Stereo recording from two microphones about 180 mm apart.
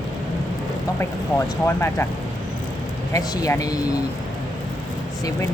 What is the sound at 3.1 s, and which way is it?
Speech, 20° left (ahead or behind).